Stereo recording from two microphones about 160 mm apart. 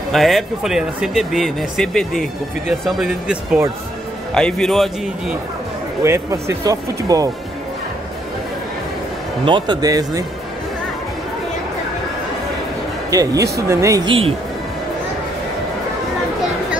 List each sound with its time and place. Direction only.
0.1 s speech: centre (ahead or behind)
6.0 s speech: 15° right (ahead or behind)
9.4 s speech: 30° right (ahead or behind)
13.1 s speech: 20° right (ahead or behind)